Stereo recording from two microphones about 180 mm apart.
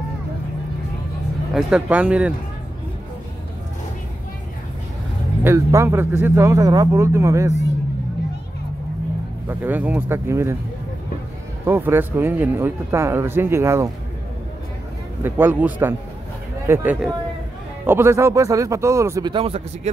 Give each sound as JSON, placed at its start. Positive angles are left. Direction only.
{"t": 1.5, "sound": "speech", "side_deg": -5}
{"t": 5.4, "sound": "speech", "side_deg": -15}
{"t": 9.5, "sound": "speech", "side_deg": -10}
{"t": 11.6, "sound": "speech", "side_deg": -10}
{"t": 15.2, "sound": "speech", "side_deg": -10}